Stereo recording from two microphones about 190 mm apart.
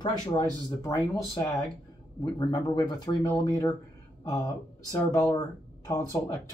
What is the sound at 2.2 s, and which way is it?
Speech, 20° left (ahead or behind).